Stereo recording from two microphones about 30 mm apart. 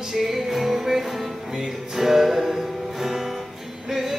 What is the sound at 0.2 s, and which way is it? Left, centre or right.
Music, centre.